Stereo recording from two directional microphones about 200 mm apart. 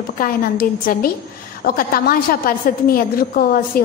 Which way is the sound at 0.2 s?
45° left (ahead or behind).